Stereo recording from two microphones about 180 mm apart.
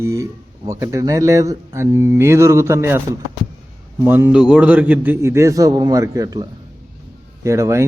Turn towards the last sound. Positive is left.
turn(degrees=-15)  # may be behind; listen again after turning